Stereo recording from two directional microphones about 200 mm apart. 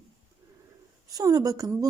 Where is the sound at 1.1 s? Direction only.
20° right (ahead or behind).